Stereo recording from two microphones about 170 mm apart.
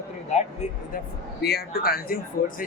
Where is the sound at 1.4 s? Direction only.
65° left (ahead or behind).